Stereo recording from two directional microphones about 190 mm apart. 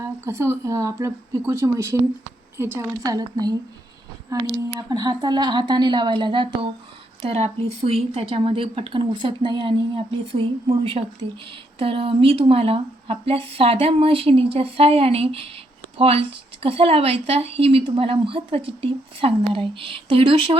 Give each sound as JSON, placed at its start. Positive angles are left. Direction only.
{"t": 0.0, "sound": "speech", "side_deg": -15}